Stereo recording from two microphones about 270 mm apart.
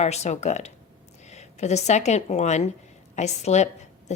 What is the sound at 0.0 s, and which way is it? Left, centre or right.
Speech, left.